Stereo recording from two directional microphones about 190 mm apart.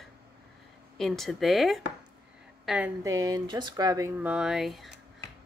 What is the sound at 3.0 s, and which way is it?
Speech, 15° right (ahead or behind).